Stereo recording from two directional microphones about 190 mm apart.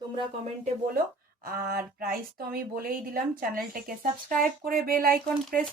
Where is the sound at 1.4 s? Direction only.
50° right (ahead or behind).